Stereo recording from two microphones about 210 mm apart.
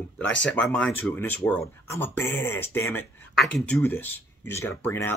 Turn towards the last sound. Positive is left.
turn(degrees=10)  # may be behind; listen again after turning